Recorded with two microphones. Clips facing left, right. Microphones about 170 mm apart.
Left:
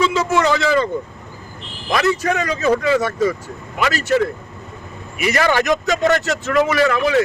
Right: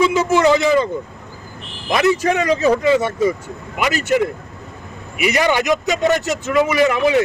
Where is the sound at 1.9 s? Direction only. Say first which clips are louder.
Right 2 dB; 20° right (ahead or behind).